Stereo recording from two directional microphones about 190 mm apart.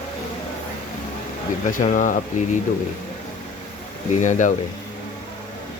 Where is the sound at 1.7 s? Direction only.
45° left (ahead or behind).